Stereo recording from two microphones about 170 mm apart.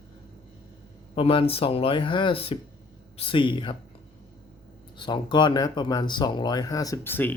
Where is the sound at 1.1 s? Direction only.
30° left (ahead or behind).